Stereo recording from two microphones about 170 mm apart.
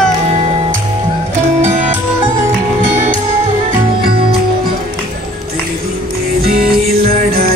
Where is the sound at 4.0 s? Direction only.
65° right (ahead or behind).